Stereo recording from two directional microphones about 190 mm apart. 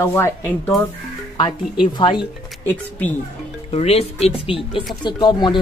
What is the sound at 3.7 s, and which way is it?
Speech, 35° left (ahead or behind).